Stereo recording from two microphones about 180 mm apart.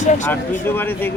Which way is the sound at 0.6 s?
10° left (ahead or behind).